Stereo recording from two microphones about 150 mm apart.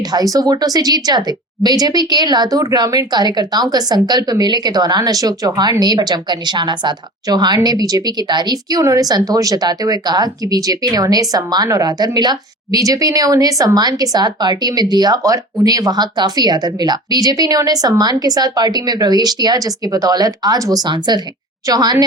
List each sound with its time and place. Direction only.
0.1 s speech: 25° right (ahead or behind)